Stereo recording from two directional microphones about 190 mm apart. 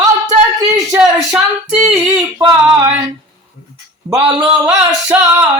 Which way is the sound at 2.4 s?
20° right (ahead or behind).